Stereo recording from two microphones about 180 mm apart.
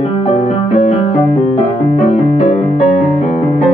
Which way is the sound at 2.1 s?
35° left (ahead or behind).